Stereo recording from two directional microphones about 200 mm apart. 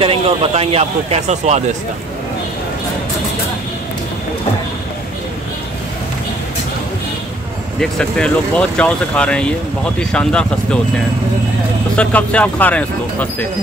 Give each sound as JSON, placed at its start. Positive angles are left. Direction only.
{"t": 0.0, "sound": "speech", "side_deg": -25}
{"t": 7.8, "sound": "speech", "side_deg": 5}
{"t": 12.0, "sound": "speech", "side_deg": 5}